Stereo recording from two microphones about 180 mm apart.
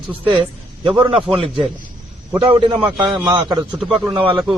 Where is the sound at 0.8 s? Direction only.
25° right (ahead or behind).